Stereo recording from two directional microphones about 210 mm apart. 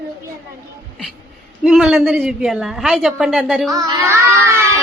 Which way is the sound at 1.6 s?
5° right (ahead or behind).